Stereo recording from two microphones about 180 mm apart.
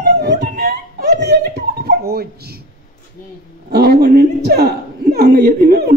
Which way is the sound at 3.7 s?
60° right (ahead or behind).